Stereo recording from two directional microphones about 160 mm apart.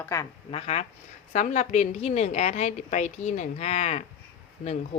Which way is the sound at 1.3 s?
50° left (ahead or behind).